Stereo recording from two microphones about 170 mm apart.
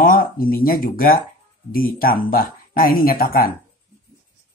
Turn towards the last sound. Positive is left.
turn(degrees=60)  # may be behind; listen again after turning